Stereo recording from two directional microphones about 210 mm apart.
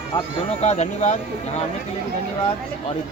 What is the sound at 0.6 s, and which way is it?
Speech, 35° left (ahead or behind).